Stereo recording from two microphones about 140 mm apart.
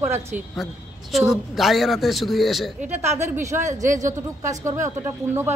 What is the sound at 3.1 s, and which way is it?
A man's voice, 20° right (ahead or behind).